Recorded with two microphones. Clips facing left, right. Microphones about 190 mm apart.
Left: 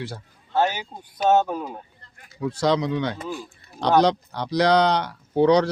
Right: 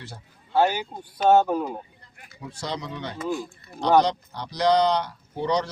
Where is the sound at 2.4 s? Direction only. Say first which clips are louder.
Left 11 dB; 80° left.